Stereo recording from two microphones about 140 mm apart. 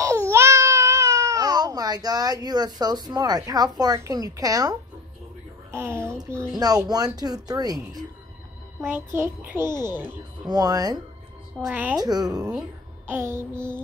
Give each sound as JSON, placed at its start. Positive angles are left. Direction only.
{"t": 0.3, "sound": "a child's voice", "side_deg": -20}
{"t": 8.8, "sound": "a child's voice", "side_deg": -15}
{"t": 10.5, "sound": "a child's voice", "side_deg": -25}
{"t": 11.6, "sound": "a child's voice", "side_deg": -10}
{"t": 12.0, "sound": "a child's voice", "side_deg": -30}
{"t": 12.4, "sound": "a child's voice", "side_deg": -10}